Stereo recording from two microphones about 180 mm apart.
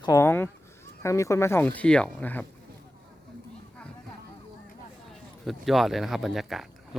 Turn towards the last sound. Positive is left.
turn(degrees=0)  # may be behind; listen again after turning